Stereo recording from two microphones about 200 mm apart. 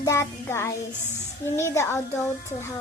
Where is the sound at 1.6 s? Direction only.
15° left (ahead or behind).